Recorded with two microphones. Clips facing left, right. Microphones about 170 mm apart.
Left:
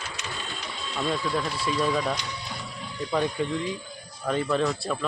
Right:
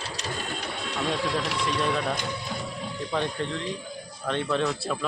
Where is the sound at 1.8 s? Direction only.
Centre (ahead or behind).